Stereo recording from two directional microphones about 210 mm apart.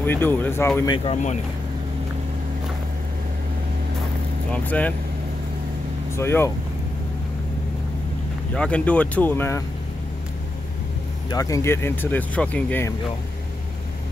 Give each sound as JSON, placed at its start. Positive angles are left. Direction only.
{"t": 0.0, "sound": "speech", "side_deg": 10}
{"t": 0.9, "sound": "speech", "side_deg": 30}
{"t": 4.5, "sound": "speech", "side_deg": 5}
{"t": 6.1, "sound": "speech", "side_deg": 10}
{"t": 8.5, "sound": "speech", "side_deg": 5}
{"t": 11.2, "sound": "speech", "side_deg": 15}